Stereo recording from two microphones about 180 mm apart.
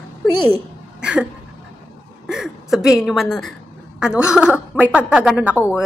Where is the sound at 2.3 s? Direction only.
Centre (ahead or behind).